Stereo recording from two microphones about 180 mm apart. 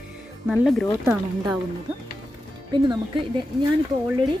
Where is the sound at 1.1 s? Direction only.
25° right (ahead or behind).